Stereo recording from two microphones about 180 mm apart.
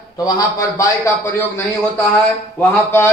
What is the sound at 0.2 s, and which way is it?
A man's voice, 20° left (ahead or behind).